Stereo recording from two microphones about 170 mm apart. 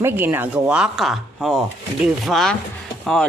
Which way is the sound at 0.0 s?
15° right (ahead or behind).